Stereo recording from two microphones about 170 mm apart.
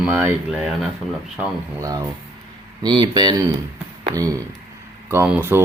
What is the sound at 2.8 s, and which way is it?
Speech, 25° right (ahead or behind).